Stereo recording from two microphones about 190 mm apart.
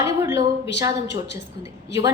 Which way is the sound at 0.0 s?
15° right (ahead or behind).